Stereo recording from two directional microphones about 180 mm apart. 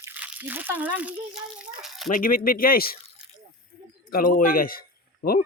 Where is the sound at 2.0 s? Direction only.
50° left (ahead or behind).